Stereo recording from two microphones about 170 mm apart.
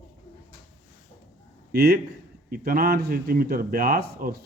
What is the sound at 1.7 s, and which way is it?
A man's voice, 70° right (ahead or behind).